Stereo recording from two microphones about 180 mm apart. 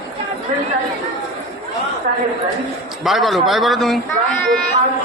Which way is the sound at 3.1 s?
Centre (ahead or behind).